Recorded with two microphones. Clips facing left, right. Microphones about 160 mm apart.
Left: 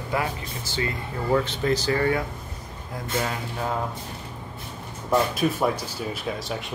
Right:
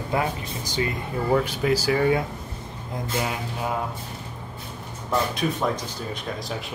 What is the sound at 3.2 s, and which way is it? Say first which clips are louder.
Speech: even; 15° right (ahead or behind).